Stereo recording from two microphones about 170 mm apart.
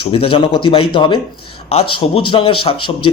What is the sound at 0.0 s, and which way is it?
A man's voice, 30° left (ahead or behind).